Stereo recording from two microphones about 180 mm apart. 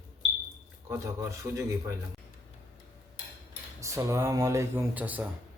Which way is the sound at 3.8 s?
15° right (ahead or behind).